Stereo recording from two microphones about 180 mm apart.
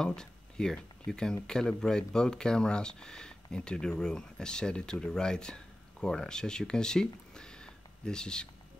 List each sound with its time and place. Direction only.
0.0 s speech: 5° left (ahead or behind)